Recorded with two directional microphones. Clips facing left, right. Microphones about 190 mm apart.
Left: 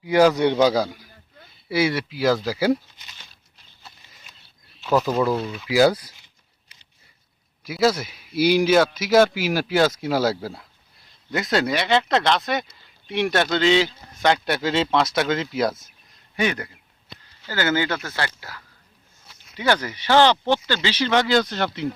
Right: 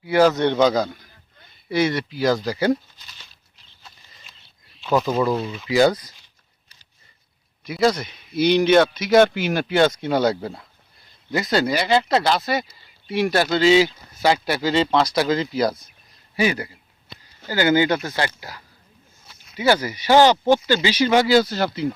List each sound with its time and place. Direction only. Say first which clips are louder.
0.0 s a man's voice: even; 15° left (ahead or behind)
4.9 s a man's voice: even; centre (ahead or behind)
7.6 s a man's voice: right 1 dB; 5° left (ahead or behind)